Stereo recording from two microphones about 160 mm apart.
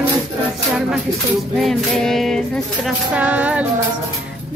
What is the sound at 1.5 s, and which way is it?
Music, centre (ahead or behind).